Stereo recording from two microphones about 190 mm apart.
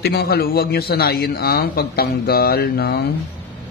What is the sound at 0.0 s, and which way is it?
A man's voice, 60° left (ahead or behind).